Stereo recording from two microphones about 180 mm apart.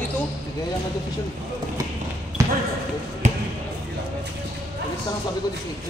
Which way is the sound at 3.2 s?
40° right (ahead or behind).